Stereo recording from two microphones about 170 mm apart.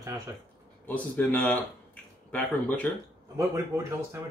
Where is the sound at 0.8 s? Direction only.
10° left (ahead or behind).